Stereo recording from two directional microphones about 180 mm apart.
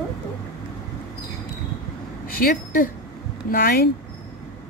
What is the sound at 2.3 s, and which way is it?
A woman's voice, 55° left (ahead or behind).